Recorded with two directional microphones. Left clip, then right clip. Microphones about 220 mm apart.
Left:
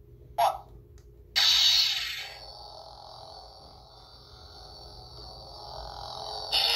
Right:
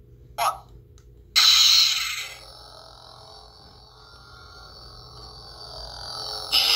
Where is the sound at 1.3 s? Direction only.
15° right (ahead or behind).